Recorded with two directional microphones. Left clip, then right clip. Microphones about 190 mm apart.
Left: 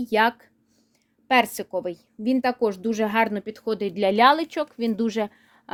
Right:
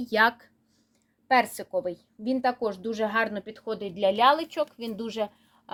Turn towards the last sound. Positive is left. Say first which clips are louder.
# left 3 dB
turn(degrees=65)  # may be behind; listen again after turning